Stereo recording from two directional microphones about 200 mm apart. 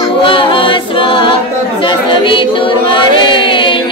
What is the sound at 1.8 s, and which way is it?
Music, 25° left (ahead or behind).